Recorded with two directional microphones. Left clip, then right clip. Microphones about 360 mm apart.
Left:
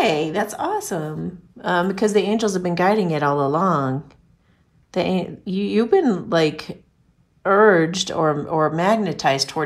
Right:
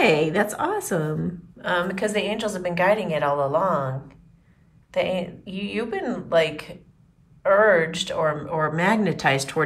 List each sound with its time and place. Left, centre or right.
0.0 s a woman's voice: centre